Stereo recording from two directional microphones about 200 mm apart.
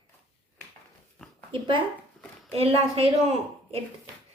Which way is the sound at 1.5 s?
25° right (ahead or behind).